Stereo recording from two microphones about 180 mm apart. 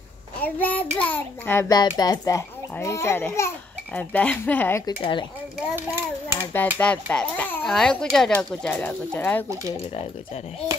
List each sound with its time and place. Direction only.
0.4 s a child's voice: 10° left (ahead or behind)
4.8 s speech: 25° left (ahead or behind)
6.2 s a child's voice: 10° left (ahead or behind)